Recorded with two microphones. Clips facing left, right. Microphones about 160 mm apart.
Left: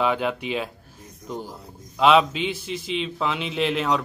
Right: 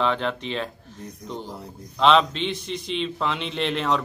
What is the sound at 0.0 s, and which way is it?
Speech, 10° left (ahead or behind).